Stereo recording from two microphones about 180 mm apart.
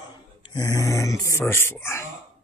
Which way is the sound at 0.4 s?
20° left (ahead or behind).